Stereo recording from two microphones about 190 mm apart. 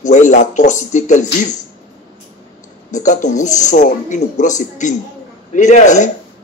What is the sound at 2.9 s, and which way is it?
Speech, 40° left (ahead or behind).